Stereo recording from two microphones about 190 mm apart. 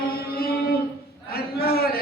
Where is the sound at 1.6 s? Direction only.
55° left (ahead or behind).